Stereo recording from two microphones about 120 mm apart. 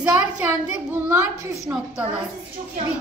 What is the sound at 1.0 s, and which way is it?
Speech, 20° right (ahead or behind).